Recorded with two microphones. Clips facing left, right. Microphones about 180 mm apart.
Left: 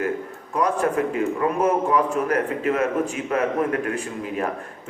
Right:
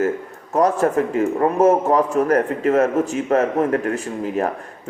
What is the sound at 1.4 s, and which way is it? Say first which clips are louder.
A man's voice: right 7 dB; 40° right (ahead or behind).